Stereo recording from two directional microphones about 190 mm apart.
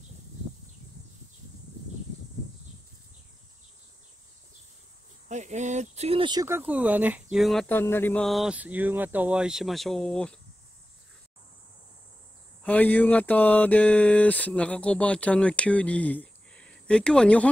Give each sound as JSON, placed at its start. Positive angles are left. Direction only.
{"t": 5.3, "sound": "speech", "side_deg": -40}
{"t": 6.4, "sound": "speech", "side_deg": -10}
{"t": 12.6, "sound": "a sound", "side_deg": 10}